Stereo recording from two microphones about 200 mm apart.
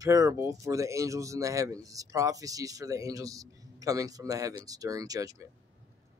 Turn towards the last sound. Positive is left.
turn(degrees=-15)  # may be behind; listen again after turning